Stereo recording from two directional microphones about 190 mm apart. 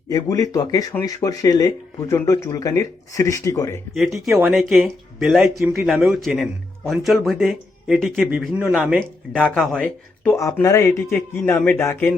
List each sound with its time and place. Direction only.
0.1 s speech: 15° left (ahead or behind)
3.9 s a man's voice: centre (ahead or behind)
9.0 s a man's voice: 5° left (ahead or behind)
10.3 s speech: 15° left (ahead or behind)